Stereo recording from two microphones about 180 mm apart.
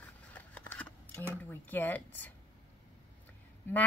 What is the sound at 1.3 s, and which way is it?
Speech, 10° left (ahead or behind).